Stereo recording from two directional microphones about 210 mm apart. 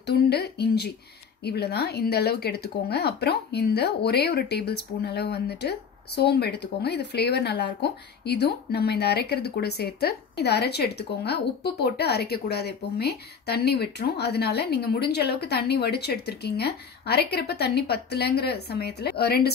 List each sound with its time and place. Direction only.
0.0 s a woman's voice: 50° left (ahead or behind)